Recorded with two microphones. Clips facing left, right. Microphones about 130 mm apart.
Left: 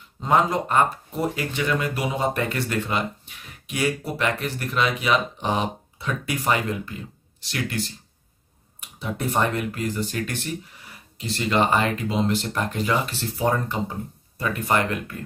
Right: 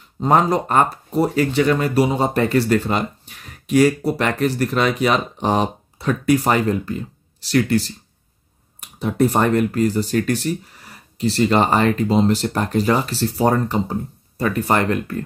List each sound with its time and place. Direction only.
0.2 s speech: 40° right (ahead or behind)
9.0 s speech: 40° right (ahead or behind)